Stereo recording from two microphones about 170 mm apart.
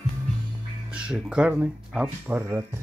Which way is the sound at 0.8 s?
5° right (ahead or behind).